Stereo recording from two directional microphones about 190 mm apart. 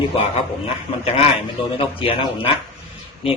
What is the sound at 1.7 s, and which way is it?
Speech, 30° left (ahead or behind).